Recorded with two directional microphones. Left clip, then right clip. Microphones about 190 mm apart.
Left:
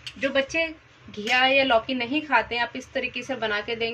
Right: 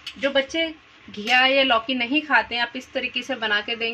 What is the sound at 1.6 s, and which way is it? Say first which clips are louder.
A woman's voice: right 2 dB; 35° right (ahead or behind).